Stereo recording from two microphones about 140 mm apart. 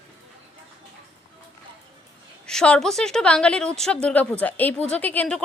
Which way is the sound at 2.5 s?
5° left (ahead or behind).